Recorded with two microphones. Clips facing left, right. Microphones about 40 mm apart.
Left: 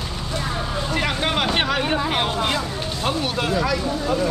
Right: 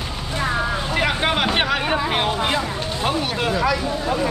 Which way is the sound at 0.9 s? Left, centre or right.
Centre.